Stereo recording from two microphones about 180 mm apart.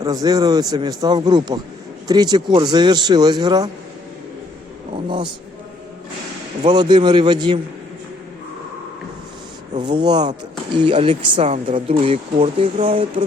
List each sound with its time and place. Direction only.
0.0 s a man's voice: 20° right (ahead or behind)
5.0 s a man's voice: 25° right (ahead or behind)
6.6 s a man's voice: 25° right (ahead or behind)
9.7 s a man's voice: 25° right (ahead or behind)
10.8 s speech: 35° right (ahead or behind)